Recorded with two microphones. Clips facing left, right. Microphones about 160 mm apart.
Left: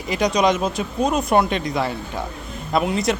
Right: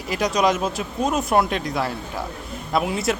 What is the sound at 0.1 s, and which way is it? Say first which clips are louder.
Speech: left 2 dB; centre (ahead or behind).